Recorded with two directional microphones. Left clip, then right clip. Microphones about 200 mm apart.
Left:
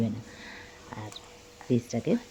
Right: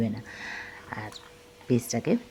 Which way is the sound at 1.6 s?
10° right (ahead or behind).